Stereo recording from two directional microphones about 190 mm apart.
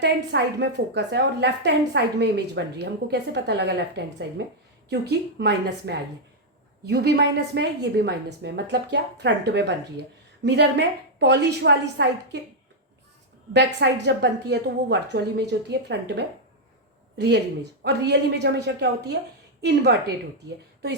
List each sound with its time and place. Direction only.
0.0 s a woman's voice: 65° right (ahead or behind)
13.7 s a woman's voice: 65° right (ahead or behind)